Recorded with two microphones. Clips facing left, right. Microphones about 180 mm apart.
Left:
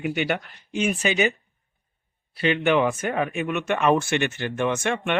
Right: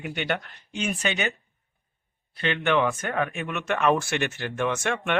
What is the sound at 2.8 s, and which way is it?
Speech, 15° left (ahead or behind).